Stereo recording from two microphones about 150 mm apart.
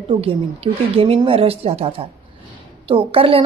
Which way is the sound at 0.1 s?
35° right (ahead or behind).